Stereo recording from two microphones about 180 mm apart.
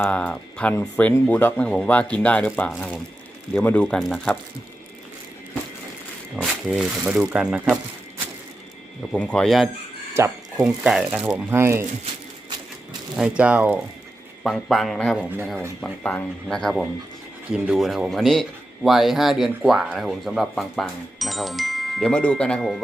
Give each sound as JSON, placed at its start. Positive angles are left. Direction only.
{"t": 0.0, "sound": "speech", "side_deg": 5}
{"t": 2.7, "sound": "a man's voice", "side_deg": -5}
{"t": 3.5, "sound": "speech", "side_deg": 10}
{"t": 6.3, "sound": "a man's voice", "side_deg": 0}
{"t": 9.1, "sound": "a man's voice", "side_deg": 5}
{"t": 10.2, "sound": "speech", "side_deg": -15}
{"t": 10.6, "sound": "a man's voice", "side_deg": -5}
{"t": 11.5, "sound": "speech", "side_deg": -15}
{"t": 13.1, "sound": "a man's voice", "side_deg": -5}